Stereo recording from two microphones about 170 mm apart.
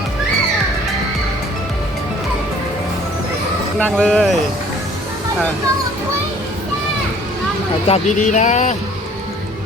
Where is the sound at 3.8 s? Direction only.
5° left (ahead or behind).